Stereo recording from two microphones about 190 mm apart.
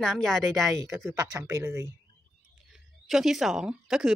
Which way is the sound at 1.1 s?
15° right (ahead or behind).